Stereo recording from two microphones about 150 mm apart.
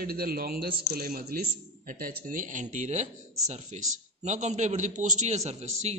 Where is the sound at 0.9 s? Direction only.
80° right.